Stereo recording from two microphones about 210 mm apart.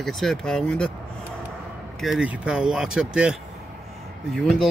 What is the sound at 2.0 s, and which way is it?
Speech, centre (ahead or behind).